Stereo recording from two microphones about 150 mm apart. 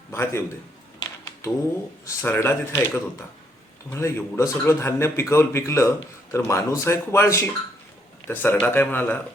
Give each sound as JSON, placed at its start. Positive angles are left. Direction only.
{"t": 0.1, "sound": "a man's voice", "side_deg": 15}
{"t": 0.9, "sound": "typing", "side_deg": 20}
{"t": 2.0, "sound": "a man's voice", "side_deg": 15}